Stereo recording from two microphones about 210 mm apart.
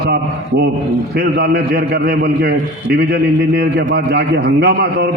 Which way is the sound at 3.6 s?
50° right (ahead or behind).